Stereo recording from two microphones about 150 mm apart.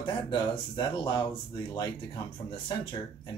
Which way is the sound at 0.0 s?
30° left (ahead or behind).